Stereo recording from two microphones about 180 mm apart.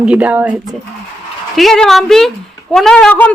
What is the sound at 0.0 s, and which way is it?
Speech, 5° right (ahead or behind).